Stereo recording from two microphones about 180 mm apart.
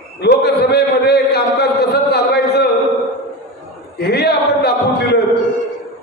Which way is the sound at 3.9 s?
65° left (ahead or behind).